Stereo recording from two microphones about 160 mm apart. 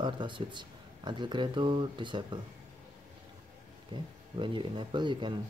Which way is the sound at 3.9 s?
25° right (ahead or behind).